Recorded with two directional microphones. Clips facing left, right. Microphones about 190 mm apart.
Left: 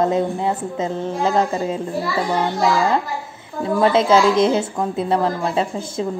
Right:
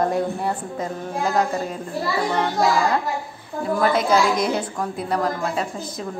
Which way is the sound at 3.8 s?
25° left (ahead or behind).